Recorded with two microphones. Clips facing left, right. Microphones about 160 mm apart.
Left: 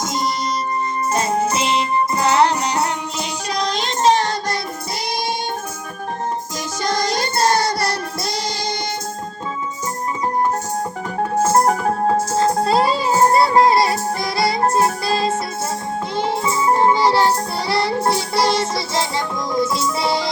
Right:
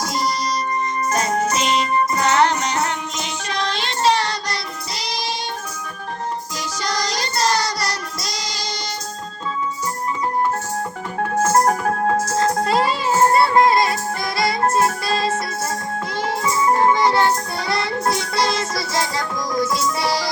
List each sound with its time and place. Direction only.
0.0 s music: 20° left (ahead or behind)
3.5 s child singing: 40° left (ahead or behind)
6.8 s child singing: 50° left (ahead or behind)
11.6 s music: 15° left (ahead or behind)